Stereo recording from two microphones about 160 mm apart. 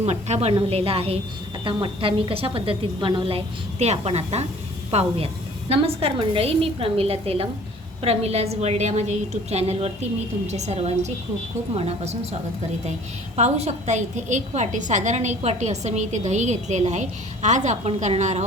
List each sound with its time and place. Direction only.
0.0 s a woman's voice: 45° right (ahead or behind)
13.3 s a woman's voice: 45° right (ahead or behind)